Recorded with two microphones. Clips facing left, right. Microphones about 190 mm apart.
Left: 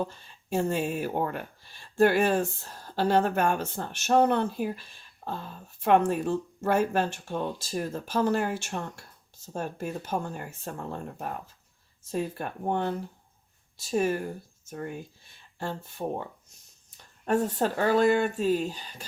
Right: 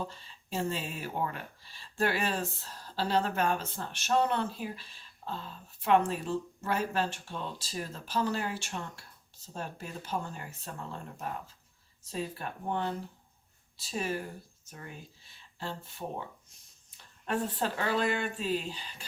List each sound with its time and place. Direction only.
0.5 s speech: 50° left (ahead or behind)
17.2 s speech: 45° left (ahead or behind)